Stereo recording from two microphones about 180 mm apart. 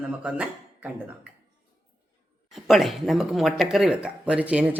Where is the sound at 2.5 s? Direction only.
Centre (ahead or behind).